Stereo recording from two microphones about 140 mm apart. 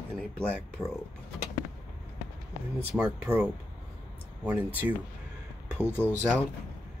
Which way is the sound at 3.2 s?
20° right (ahead or behind).